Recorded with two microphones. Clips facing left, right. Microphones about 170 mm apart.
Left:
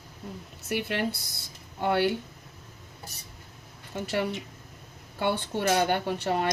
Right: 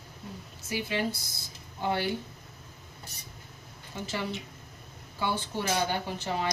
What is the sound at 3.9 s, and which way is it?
Speech, 65° left (ahead or behind).